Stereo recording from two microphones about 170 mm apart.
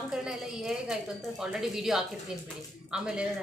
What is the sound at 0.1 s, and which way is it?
A woman's voice, 5° right (ahead or behind).